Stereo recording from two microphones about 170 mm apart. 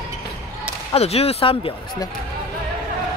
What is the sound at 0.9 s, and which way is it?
Speech, 35° left (ahead or behind).